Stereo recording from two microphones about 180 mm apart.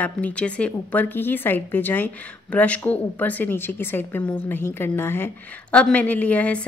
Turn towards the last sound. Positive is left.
turn(degrees=5)  # may be behind; listen again after turning